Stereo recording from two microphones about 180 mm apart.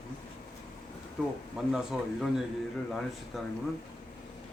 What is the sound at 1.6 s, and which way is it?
Speech, 5° right (ahead or behind).